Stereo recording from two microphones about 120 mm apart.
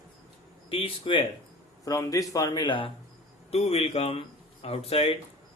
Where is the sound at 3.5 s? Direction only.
60° left (ahead or behind).